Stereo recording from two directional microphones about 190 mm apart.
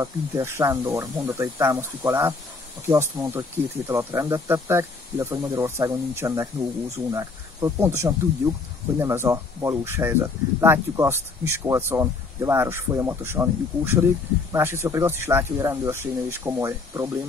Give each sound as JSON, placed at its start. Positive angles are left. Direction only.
{"t": 0.0, "sound": "speech", "side_deg": -15}